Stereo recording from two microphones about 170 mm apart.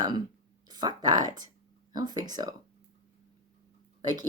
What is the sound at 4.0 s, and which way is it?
Speech, 25° right (ahead or behind).